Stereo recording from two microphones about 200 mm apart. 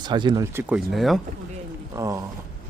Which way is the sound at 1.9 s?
15° right (ahead or behind).